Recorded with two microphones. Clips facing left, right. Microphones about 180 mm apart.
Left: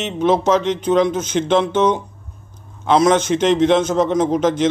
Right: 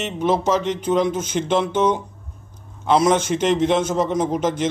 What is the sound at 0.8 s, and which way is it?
Speech, 75° left (ahead or behind).